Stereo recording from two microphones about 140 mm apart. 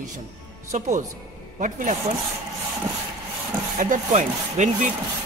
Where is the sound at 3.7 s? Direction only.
65° right (ahead or behind).